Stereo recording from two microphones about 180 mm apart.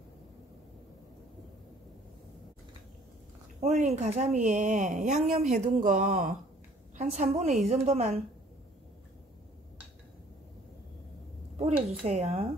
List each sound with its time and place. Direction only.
3.6 s speech: 40° right (ahead or behind)
11.5 s speech: 35° right (ahead or behind)